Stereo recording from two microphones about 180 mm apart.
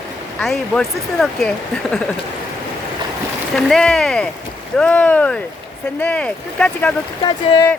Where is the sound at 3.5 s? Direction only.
5° left (ahead or behind).